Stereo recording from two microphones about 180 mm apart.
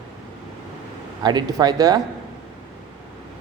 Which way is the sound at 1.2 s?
25° right (ahead or behind).